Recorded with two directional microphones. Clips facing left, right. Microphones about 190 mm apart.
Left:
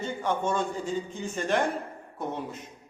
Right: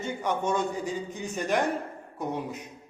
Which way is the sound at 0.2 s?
15° right (ahead or behind).